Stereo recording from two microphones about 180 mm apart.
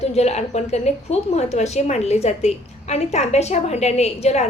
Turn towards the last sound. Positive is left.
turn(degrees=35)  # may be behind; listen again after turning